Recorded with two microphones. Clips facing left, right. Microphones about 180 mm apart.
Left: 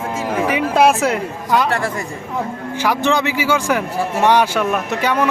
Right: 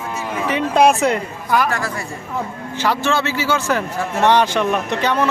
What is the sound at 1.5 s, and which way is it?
Speech, 20° left (ahead or behind).